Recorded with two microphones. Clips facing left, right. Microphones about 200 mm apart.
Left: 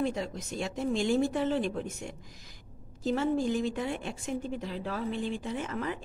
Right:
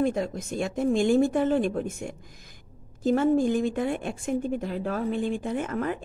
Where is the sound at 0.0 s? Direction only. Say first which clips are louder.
Right 6 dB; 50° right (ahead or behind).